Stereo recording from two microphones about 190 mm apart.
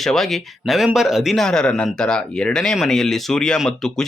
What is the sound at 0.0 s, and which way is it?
Speech, centre (ahead or behind).